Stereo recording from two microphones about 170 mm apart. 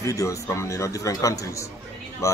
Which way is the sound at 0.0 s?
20° left (ahead or behind).